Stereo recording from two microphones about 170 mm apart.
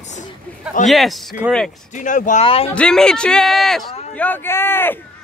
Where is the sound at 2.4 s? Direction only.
35° left (ahead or behind).